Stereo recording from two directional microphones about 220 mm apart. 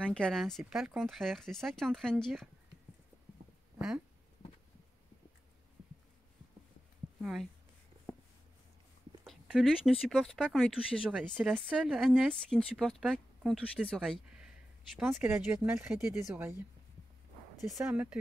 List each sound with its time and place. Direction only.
0.0 s speech: 5° left (ahead or behind)
7.2 s speech: centre (ahead or behind)
9.2 s speech: centre (ahead or behind)
17.7 s speech: 10° right (ahead or behind)